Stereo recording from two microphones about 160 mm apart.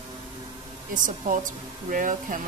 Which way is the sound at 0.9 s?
55° right (ahead or behind).